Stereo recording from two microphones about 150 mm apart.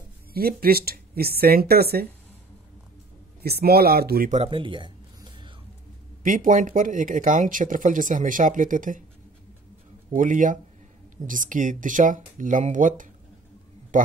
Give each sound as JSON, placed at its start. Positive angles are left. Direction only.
{"t": 0.3, "sound": "speech", "side_deg": -90}
{"t": 3.4, "sound": "speech", "side_deg": -90}
{"t": 4.5, "sound": "a sound", "side_deg": -35}
{"t": 6.2, "sound": "speech", "side_deg": -60}
{"t": 10.1, "sound": "a man's voice", "side_deg": -60}